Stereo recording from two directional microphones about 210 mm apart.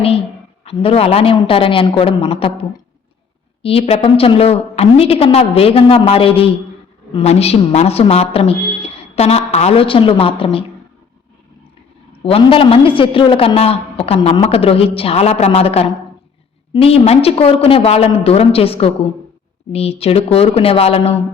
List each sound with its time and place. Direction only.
0.6 s a man's voice: 30° left (ahead or behind)
12.2 s a man's voice: 25° left (ahead or behind)